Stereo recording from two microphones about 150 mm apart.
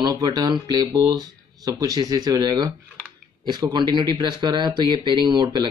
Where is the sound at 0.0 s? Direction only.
25° right (ahead or behind).